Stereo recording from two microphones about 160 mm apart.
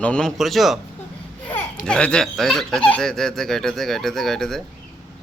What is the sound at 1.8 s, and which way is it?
Speech, 5° left (ahead or behind).